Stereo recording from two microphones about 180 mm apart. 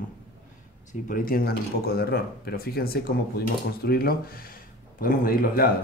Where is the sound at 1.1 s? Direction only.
55° left (ahead or behind).